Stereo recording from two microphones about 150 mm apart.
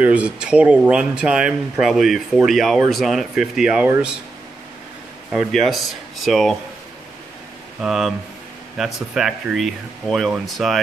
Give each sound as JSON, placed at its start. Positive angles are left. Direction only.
{"t": 0.0, "sound": "speech", "side_deg": -10}
{"t": 5.3, "sound": "speech", "side_deg": 0}
{"t": 7.8, "sound": "speech", "side_deg": -5}